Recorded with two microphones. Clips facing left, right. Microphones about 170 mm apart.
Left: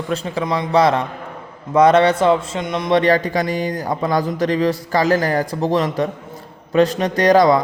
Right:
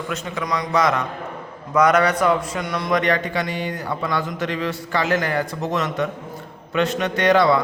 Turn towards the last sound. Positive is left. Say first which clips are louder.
# left 4 dB
turn(degrees=40)  # may be behind; listen again after turning